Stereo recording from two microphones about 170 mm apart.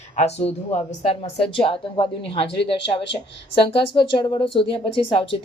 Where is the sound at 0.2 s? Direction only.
40° left (ahead or behind).